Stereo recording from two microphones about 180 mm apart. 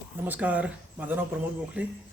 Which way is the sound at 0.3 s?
10° right (ahead or behind).